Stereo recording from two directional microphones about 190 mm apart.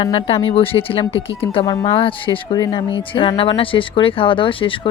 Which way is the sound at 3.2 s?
25° left (ahead or behind).